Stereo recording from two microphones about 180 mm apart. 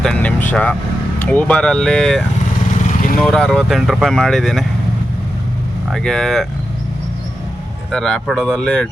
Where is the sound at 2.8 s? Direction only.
45° left (ahead or behind).